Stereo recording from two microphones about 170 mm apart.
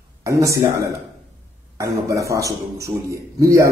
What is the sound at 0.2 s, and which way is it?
Speech, 20° right (ahead or behind).